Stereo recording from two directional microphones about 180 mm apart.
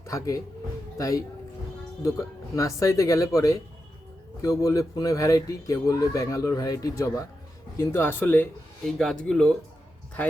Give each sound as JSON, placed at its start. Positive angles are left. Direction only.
{"t": 0.0, "sound": "speech", "side_deg": 20}